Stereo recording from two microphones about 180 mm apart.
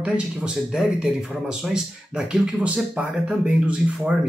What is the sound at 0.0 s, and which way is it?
Speech, 5° right (ahead or behind).